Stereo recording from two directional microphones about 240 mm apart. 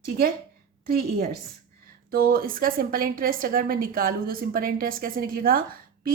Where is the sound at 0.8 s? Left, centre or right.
Right.